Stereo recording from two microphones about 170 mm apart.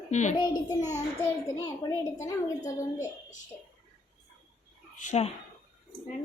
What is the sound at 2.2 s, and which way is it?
Speech, 20° left (ahead or behind).